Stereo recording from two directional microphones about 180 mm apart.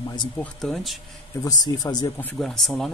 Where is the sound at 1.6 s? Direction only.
20° left (ahead or behind).